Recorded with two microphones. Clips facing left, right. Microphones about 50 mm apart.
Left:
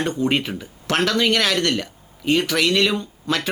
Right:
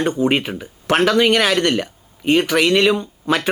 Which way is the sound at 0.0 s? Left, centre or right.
Centre.